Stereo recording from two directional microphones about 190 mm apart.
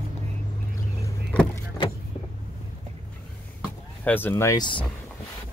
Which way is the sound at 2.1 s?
35° left (ahead or behind).